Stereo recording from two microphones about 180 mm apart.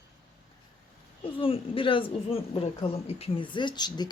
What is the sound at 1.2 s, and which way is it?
A woman's voice, 30° left (ahead or behind).